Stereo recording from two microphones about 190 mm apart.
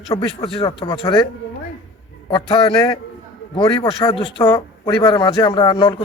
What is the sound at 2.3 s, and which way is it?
Speech, 25° left (ahead or behind).